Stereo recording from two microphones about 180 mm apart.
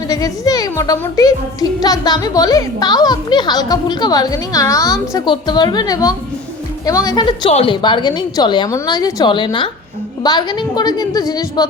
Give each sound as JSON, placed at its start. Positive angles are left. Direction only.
{"t": 0.1, "sound": "a woman's voice", "side_deg": 20}